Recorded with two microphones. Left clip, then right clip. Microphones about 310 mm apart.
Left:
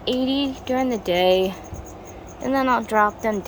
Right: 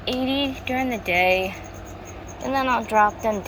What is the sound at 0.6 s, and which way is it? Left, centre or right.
Speech, left.